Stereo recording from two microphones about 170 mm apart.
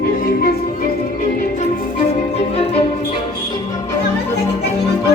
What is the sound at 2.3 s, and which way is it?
Music, 35° left (ahead or behind).